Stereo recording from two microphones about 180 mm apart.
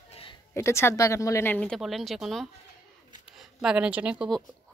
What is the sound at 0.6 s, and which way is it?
A woman's voice, 15° left (ahead or behind).